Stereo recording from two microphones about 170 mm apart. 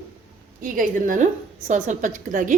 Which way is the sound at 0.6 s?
55° right (ahead or behind).